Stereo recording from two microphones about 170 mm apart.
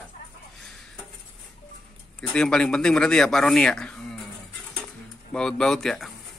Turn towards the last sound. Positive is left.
turn(degrees=5)  # may be behind; listen again after turning